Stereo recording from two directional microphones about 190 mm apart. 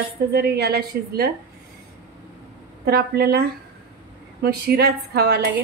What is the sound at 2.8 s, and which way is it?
A woman's voice, 55° right (ahead or behind).